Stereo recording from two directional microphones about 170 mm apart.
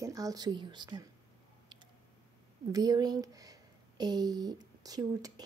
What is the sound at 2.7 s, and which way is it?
Speech, 20° right (ahead or behind).